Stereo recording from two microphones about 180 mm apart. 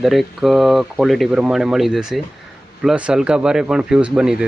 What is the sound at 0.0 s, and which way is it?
Speech, centre (ahead or behind).